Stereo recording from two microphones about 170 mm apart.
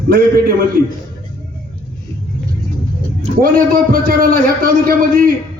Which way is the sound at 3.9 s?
60° right (ahead or behind).